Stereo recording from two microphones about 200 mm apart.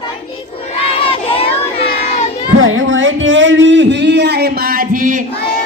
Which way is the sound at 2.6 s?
80° right.